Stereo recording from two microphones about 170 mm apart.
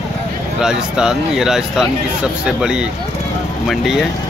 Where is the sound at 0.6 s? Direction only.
5° right (ahead or behind).